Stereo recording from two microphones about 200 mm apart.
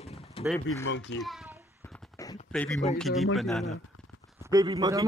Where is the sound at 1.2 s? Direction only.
Centre (ahead or behind).